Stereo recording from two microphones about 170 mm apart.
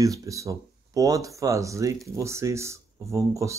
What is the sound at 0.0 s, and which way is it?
Speech, 20° right (ahead or behind).